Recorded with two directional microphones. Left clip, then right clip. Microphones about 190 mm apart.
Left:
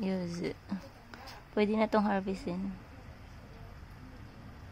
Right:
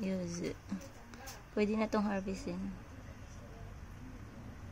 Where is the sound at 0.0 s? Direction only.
10° left (ahead or behind).